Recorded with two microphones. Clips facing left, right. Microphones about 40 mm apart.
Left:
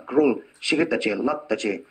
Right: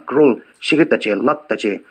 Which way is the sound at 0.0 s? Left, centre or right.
Right.